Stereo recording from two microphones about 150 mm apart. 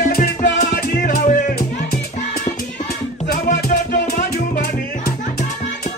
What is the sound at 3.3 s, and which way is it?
Music, 70° left (ahead or behind).